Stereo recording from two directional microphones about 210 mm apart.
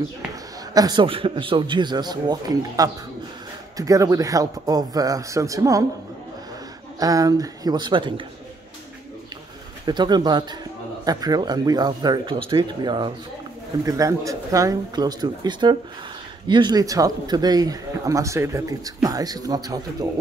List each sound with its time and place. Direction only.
0.7 s a man's voice: 20° right (ahead or behind)
7.0 s a man's voice: 15° right (ahead or behind)
9.8 s a man's voice: 20° right (ahead or behind)